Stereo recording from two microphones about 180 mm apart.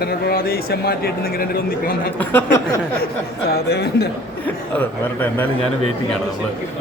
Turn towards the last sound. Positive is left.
turn(degrees=10)  # may be behind; listen again after turning